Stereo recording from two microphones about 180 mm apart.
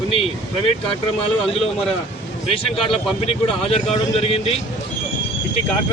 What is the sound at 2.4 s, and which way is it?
Speech, 30° left (ahead or behind).